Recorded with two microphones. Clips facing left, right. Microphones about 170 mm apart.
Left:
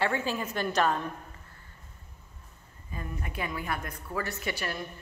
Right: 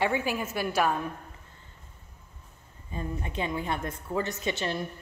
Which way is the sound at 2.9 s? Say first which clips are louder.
Right 4 dB; 25° right (ahead or behind).